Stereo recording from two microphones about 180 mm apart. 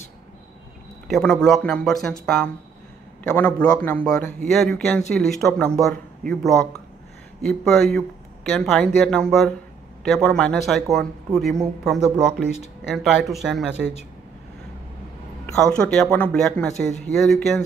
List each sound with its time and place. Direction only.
1.0 s a man's voice: centre (ahead or behind)
13.7 s speech: 70° right (ahead or behind)
15.4 s speech: 5° left (ahead or behind)